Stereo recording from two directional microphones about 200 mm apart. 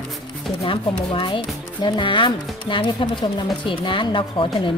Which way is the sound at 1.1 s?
25° left (ahead or behind).